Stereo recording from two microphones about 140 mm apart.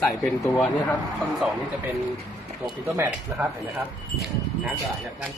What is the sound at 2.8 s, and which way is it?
Speech, 20° right (ahead or behind).